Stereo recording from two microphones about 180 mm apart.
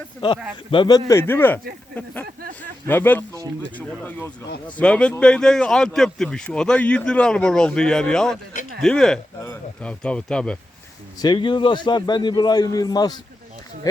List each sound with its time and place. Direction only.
0.7 s a man's voice: 25° left (ahead or behind)
2.8 s a man's voice: 10° left (ahead or behind)
11.2 s a man's voice: 25° left (ahead or behind)